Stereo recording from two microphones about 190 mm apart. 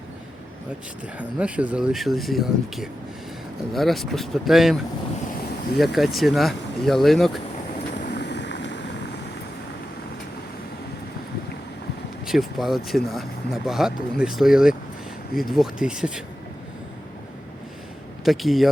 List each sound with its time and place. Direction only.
1.2 s speech: 5° right (ahead or behind)
5.8 s speech: centre (ahead or behind)
8.1 s vehicle: 65° left (ahead or behind)
12.2 s speech: centre (ahead or behind)
18.3 s speech: centre (ahead or behind)